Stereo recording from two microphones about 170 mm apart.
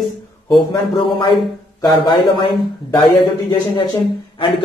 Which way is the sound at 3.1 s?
35° left (ahead or behind).